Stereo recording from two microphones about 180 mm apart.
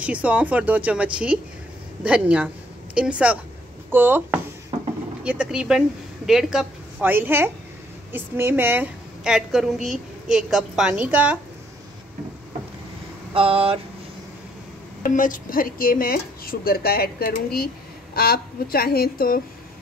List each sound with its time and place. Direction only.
0.0 s a woman's voice: 5° right (ahead or behind)
13.3 s a sound: 30° right (ahead or behind)
15.0 s speech: 50° left (ahead or behind)